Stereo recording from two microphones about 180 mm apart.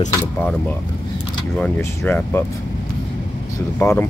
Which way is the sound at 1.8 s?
10° left (ahead or behind).